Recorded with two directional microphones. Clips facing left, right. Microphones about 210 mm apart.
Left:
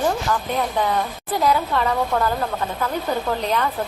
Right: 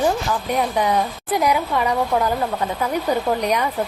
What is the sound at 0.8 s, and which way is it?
Speech, 15° right (ahead or behind).